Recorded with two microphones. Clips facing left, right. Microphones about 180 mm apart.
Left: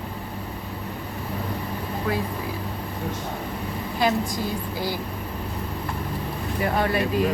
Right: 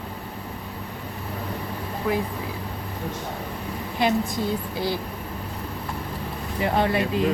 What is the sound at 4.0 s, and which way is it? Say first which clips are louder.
Speech: right 1 dB; 25° right (ahead or behind).